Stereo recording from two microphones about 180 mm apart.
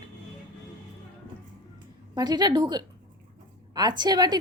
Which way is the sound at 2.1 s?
25° right (ahead or behind).